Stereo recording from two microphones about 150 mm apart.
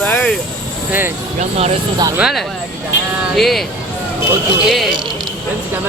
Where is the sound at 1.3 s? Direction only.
45° right (ahead or behind).